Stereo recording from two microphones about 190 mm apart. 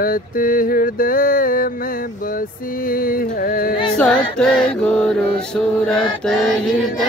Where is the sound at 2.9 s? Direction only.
50° left (ahead or behind).